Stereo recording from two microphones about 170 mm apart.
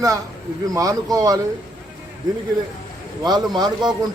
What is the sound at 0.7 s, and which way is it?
Speech, 20° right (ahead or behind).